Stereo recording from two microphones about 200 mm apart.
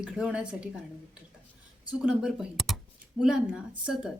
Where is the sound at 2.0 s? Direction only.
5° right (ahead or behind).